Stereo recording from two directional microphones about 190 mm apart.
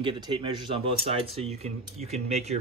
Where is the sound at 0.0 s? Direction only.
25° right (ahead or behind).